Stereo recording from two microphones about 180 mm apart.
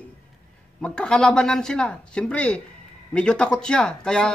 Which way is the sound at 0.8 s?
5° left (ahead or behind).